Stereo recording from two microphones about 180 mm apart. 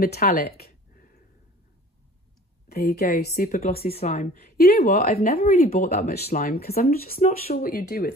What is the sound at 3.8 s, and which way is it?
A woman's voice, 35° left (ahead or behind).